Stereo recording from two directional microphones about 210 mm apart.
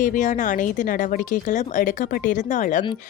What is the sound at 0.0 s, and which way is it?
A woman's voice, 35° left (ahead or behind).